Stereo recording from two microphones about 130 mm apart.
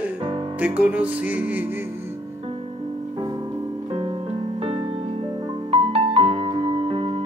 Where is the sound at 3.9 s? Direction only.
45° right (ahead or behind).